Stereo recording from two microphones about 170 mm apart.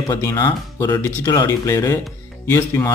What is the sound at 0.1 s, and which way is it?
Speech, 20° left (ahead or behind).